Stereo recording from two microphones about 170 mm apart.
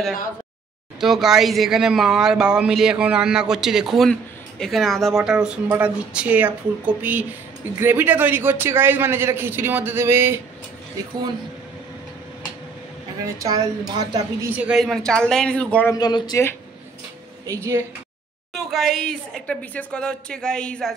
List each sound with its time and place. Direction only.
1.0 s a man's voice: centre (ahead or behind)
13.4 s a woman's voice: 20° right (ahead or behind)
14.5 s speech: 5° right (ahead or behind)
15.9 s speech: 25° left (ahead or behind)
17.5 s a man's voice: 15° right (ahead or behind)
18.5 s speech: centre (ahead or behind)